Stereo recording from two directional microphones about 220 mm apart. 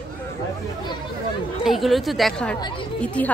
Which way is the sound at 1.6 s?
Centre (ahead or behind).